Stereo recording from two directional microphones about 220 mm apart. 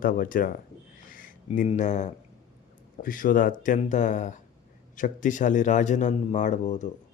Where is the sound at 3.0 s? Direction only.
40° left (ahead or behind).